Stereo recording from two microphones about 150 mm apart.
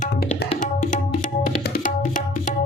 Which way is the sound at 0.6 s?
55° left (ahead or behind).